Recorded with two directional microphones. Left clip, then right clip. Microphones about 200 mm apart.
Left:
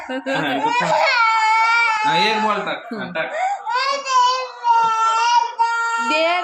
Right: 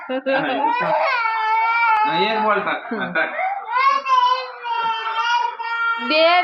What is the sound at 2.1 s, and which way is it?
Speech, 55° left (ahead or behind).